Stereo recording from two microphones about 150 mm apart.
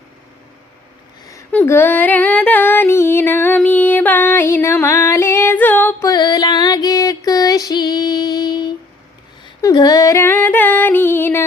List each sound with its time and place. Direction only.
1.5 s female singing: 15° left (ahead or behind)
6.1 s music: 30° left (ahead or behind)
9.6 s female singing: 25° left (ahead or behind)
10.4 s music: 10° left (ahead or behind)